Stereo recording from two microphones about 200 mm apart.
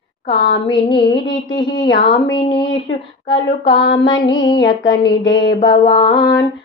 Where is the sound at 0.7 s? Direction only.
25° left (ahead or behind).